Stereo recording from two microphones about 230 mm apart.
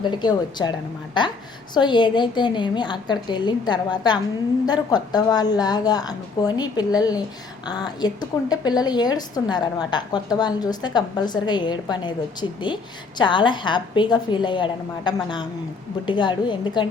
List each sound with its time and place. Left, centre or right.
0.0 s a woman's voice: centre